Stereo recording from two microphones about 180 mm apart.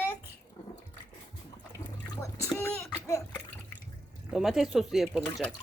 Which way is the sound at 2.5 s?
5° left (ahead or behind).